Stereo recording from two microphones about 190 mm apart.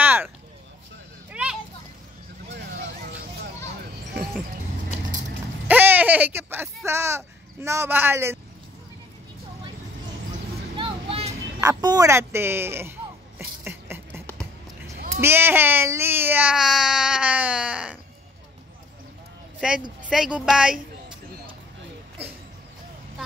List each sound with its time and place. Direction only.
0.0 s a sound: 10° right (ahead or behind)
1.3 s children playing: 5° right (ahead or behind)
5.7 s speech: 10° right (ahead or behind)
10.8 s vehicle: 30° right (ahead or behind)
11.6 s speech: 20° right (ahead or behind)
13.7 s a sound: 10° right (ahead or behind)
14.4 s music: 15° right (ahead or behind)
15.1 s speech: 10° right (ahead or behind)
19.6 s speech: 5° right (ahead or behind)